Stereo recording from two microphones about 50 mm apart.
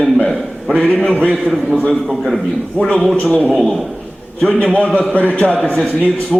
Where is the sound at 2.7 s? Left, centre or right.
Left.